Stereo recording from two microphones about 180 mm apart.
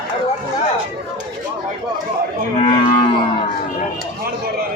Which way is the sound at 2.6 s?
30° left (ahead or behind).